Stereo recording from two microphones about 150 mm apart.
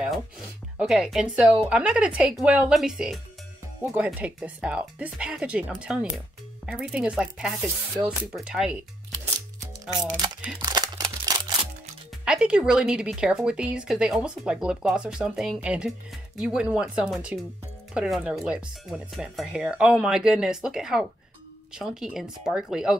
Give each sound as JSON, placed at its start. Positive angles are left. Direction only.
{"t": 0.7, "sound": "speech", "side_deg": -5}
{"t": 9.6, "sound": "music", "side_deg": -25}
{"t": 10.6, "sound": "crumpling", "side_deg": -25}
{"t": 12.3, "sound": "speech", "side_deg": -5}